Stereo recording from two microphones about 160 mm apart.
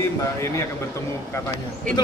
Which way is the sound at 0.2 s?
20° left (ahead or behind).